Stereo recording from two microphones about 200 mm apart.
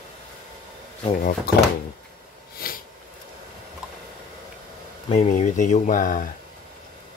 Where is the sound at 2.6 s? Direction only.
50° left (ahead or behind).